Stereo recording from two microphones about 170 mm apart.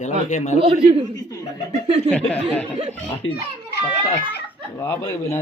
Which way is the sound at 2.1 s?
10° left (ahead or behind).